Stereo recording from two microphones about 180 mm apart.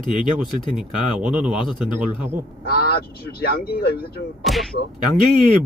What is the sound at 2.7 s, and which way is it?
Speech, 60° left (ahead or behind).